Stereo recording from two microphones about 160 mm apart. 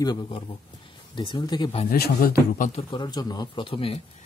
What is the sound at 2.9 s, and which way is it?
Speech, 25° left (ahead or behind).